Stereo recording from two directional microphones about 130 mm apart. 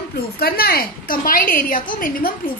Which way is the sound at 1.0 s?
90° left.